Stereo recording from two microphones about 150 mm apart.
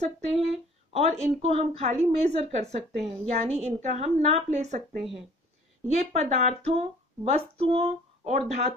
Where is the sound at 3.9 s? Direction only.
45° right (ahead or behind).